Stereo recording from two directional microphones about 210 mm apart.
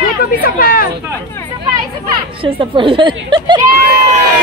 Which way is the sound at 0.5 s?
45° left (ahead or behind).